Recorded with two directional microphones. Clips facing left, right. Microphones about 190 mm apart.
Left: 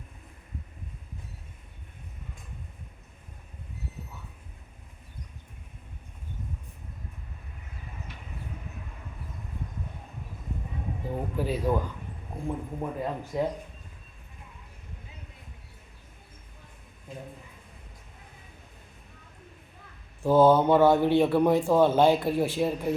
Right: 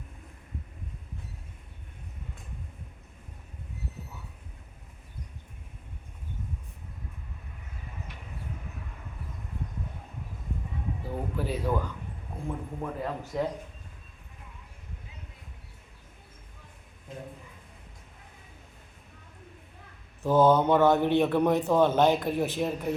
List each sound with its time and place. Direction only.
11.1 s a man's voice: 10° left (ahead or behind)
20.2 s a man's voice: 10° left (ahead or behind)